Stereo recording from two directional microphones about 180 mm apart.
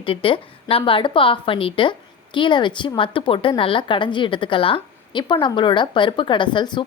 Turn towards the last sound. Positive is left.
turn(degrees=25)  # may be behind; listen again after turning